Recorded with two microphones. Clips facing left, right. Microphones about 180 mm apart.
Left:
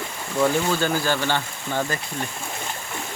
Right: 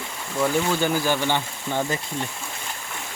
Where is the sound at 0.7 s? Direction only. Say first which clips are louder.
Even; 15° right (ahead or behind).